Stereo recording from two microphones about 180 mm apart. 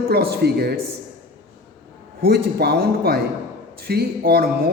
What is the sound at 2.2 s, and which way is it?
A man's voice, 60° right (ahead or behind).